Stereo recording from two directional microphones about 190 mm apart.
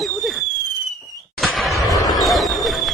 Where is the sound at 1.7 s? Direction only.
15° left (ahead or behind).